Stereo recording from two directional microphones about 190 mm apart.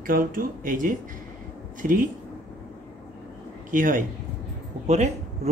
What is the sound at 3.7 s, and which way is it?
Speech, 45° right (ahead or behind).